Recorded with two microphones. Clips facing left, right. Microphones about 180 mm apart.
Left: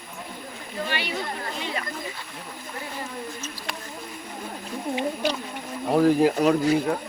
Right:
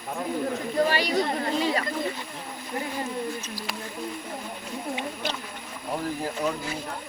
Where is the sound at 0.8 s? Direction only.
40° right (ahead or behind).